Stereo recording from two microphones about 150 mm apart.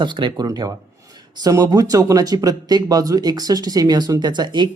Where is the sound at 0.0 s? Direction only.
30° right (ahead or behind).